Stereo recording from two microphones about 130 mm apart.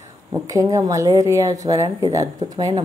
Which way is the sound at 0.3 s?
25° right (ahead or behind).